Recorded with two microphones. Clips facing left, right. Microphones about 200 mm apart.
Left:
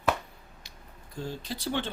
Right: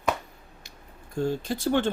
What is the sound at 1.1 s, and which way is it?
Speech, 50° right (ahead or behind).